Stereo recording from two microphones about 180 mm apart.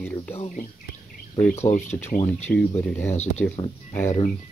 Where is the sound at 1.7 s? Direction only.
40° left (ahead or behind).